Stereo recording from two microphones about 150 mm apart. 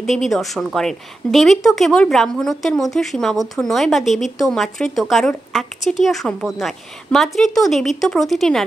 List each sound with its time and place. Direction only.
0.0 s speech: centre (ahead or behind)